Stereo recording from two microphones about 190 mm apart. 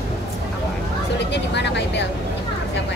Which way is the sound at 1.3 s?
65° left (ahead or behind).